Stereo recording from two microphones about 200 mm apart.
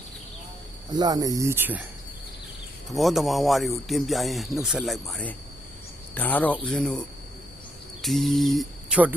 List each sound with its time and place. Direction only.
0.9 s speech: 20° right (ahead or behind)
2.9 s speech: centre (ahead or behind)
8.0 s speech: centre (ahead or behind)